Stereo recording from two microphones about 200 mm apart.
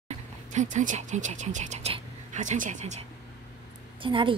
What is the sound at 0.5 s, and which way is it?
A woman's voice, 35° right (ahead or behind).